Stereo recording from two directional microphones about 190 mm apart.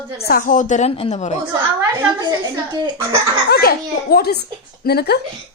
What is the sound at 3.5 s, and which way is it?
A woman's voice, 55° left (ahead or behind).